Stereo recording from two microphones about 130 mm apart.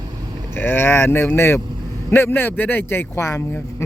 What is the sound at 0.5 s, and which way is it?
A man's voice, 15° left (ahead or behind).